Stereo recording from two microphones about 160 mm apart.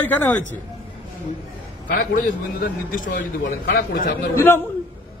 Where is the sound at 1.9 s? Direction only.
65° left (ahead or behind).